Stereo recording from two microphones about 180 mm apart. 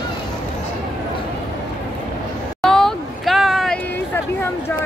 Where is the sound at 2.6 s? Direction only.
Centre (ahead or behind).